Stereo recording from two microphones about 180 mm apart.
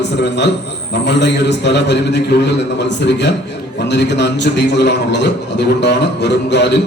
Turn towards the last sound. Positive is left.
turn(degrees=70)  # may be behind; listen again after turning